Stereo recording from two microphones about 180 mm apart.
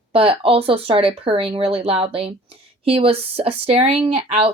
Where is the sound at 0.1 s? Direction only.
30° right (ahead or behind).